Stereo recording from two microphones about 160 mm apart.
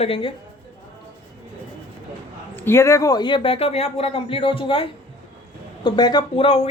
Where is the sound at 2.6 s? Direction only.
15° left (ahead or behind).